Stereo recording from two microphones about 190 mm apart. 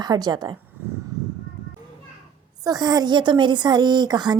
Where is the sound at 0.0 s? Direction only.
20° right (ahead or behind).